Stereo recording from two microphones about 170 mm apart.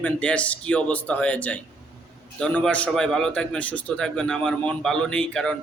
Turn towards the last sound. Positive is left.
turn(degrees=5)  # may be behind; listen again after turning